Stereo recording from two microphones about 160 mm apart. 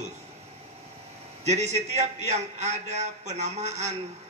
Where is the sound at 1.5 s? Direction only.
45° right (ahead or behind).